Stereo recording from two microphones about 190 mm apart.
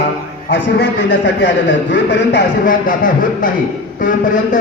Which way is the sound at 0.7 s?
65° left (ahead or behind).